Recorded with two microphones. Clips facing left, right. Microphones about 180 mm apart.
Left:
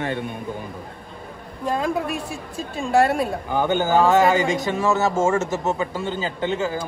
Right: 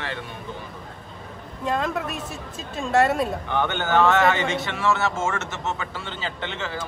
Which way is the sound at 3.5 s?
35° left (ahead or behind).